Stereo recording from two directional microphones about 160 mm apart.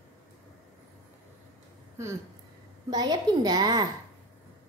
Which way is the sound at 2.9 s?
25° right (ahead or behind).